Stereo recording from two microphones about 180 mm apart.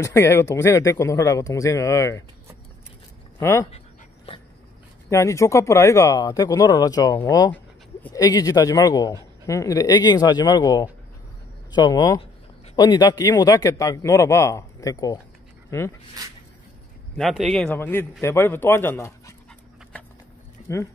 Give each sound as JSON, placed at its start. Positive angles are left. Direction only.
{"t": 0.0, "sound": "speech", "side_deg": 15}
{"t": 3.3, "sound": "speech", "side_deg": 15}
{"t": 4.3, "sound": "dog", "side_deg": 35}
{"t": 5.1, "sound": "a man's voice", "side_deg": 15}
{"t": 17.2, "sound": "speech", "side_deg": 0}
{"t": 17.7, "sound": "speech", "side_deg": 10}